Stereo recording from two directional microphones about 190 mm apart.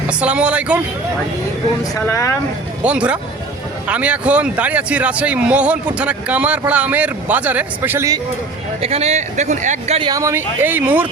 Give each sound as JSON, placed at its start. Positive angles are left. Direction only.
{"t": 0.1, "sound": "a man's voice", "side_deg": -5}
{"t": 1.8, "sound": "speech", "side_deg": 15}
{"t": 2.8, "sound": "a man's voice", "side_deg": -5}
{"t": 8.8, "sound": "speech", "side_deg": -35}
{"t": 10.0, "sound": "a man's voice", "side_deg": -20}